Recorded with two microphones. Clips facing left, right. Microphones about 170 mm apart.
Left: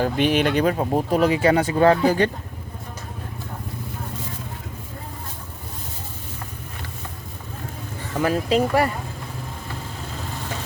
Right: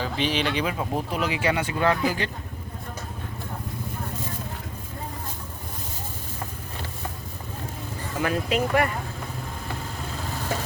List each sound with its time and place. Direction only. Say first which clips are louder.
0.0 s speech: left 6 dB; 50° left (ahead or behind)
8.2 s speech: left 5 dB; 35° left (ahead or behind)